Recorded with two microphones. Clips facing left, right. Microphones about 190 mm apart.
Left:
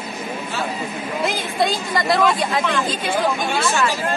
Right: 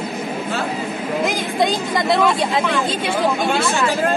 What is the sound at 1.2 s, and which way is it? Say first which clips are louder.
Speech: right 1 dB; 20° right (ahead or behind).